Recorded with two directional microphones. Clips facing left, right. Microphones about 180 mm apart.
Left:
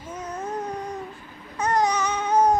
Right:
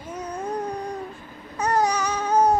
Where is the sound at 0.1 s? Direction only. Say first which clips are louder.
Right 2 dB; 10° right (ahead or behind).